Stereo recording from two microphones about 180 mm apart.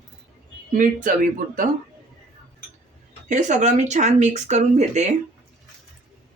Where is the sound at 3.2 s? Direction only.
40° right (ahead or behind).